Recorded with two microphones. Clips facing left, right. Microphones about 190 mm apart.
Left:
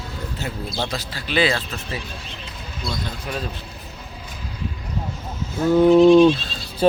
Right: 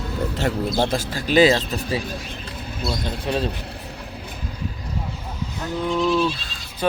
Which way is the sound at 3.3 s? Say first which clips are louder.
Right 6 dB; 25° right (ahead or behind).